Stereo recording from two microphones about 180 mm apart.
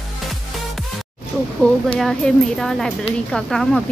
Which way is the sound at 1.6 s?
5° left (ahead or behind).